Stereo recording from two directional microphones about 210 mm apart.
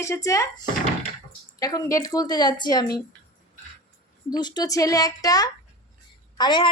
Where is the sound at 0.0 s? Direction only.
15° left (ahead or behind).